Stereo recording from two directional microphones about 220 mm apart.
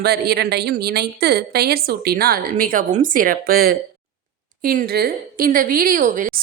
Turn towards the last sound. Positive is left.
turn(degrees=-35)  # may be behind; listen again after turning